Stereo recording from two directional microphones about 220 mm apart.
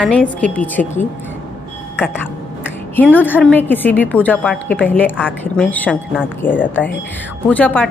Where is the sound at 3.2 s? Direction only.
10° left (ahead or behind).